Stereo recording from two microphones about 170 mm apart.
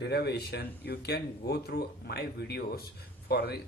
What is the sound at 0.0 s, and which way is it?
Speech, 75° left (ahead or behind).